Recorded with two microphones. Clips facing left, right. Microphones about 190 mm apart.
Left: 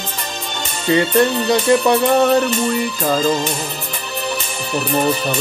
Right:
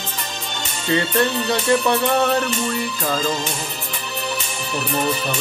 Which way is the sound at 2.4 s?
35° left (ahead or behind).